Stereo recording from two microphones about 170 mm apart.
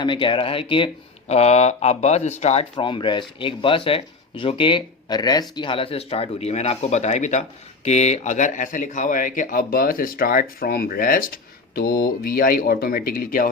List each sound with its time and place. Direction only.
0.0 s speech: 30° left (ahead or behind)
2.7 s speech: 30° left (ahead or behind); by 13.5 s 55° left (ahead or behind)